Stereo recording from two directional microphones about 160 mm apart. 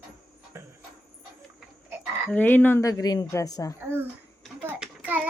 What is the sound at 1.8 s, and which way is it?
Frog, 15° right (ahead or behind).